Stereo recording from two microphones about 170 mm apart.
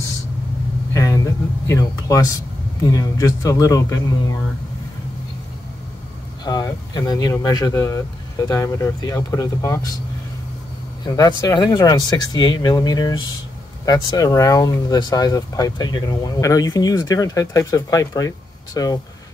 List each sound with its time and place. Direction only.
0.9 s a sound: 20° left (ahead or behind)
2.9 s speech: 20° left (ahead or behind)
6.4 s speech: 25° left (ahead or behind)
11.1 s speech: 20° left (ahead or behind)